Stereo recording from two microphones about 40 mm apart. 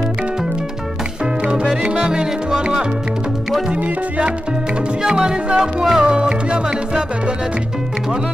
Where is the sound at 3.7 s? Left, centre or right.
Right.